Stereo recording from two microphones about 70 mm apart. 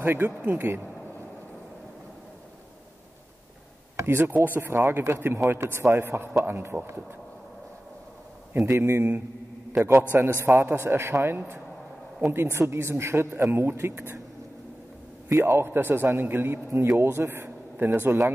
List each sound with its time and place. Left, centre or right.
0.0 s speech: right
3.9 s speech: right
8.6 s speech: right
10.4 s speech: right
15.2 s a man's voice: right